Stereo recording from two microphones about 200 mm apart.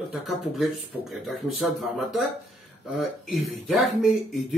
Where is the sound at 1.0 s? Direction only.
Centre (ahead or behind).